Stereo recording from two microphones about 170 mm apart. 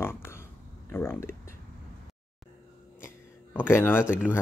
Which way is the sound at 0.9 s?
15° left (ahead or behind).